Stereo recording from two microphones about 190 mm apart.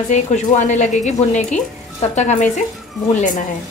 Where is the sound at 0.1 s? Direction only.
40° left (ahead or behind).